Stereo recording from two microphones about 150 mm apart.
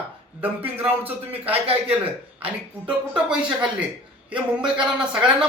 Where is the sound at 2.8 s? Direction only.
5° right (ahead or behind).